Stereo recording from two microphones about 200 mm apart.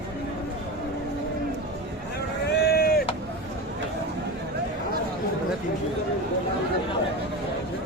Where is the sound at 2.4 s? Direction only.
55° left (ahead or behind).